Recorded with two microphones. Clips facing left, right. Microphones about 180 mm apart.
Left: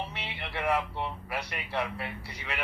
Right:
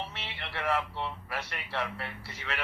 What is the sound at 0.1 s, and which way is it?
A man's voice, 15° left (ahead or behind).